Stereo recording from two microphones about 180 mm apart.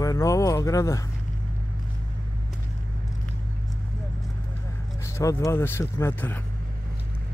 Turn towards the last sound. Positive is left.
turn(degrees=15)  # may be behind; listen again after turning